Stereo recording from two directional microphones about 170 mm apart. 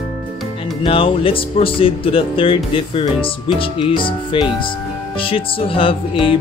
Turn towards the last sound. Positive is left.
turn(degrees=30)  # may be behind; listen again after turning